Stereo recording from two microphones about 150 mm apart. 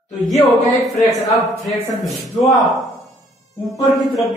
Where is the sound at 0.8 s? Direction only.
Centre (ahead or behind).